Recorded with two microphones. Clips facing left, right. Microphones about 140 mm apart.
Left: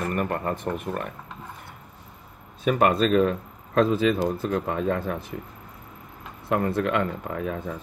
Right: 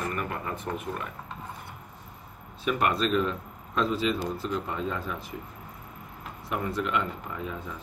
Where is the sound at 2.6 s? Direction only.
50° left (ahead or behind).